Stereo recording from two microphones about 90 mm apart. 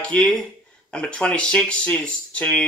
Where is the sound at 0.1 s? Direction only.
10° left (ahead or behind).